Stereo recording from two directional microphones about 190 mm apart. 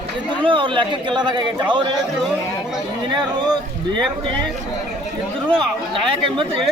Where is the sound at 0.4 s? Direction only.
25° right (ahead or behind).